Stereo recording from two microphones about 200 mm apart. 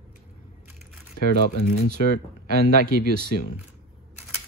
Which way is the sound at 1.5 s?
40° left (ahead or behind).